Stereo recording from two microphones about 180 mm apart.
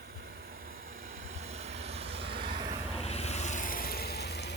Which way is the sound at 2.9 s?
35° left (ahead or behind).